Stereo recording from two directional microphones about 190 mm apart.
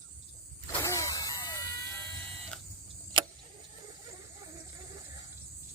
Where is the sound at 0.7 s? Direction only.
15° left (ahead or behind).